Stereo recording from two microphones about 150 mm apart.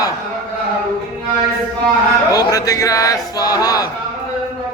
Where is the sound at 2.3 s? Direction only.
25° left (ahead or behind).